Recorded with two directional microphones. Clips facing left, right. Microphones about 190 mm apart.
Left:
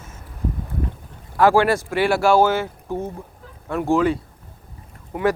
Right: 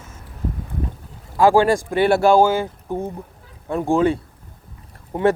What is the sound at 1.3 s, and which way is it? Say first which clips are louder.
Speech: right 2 dB; 20° right (ahead or behind).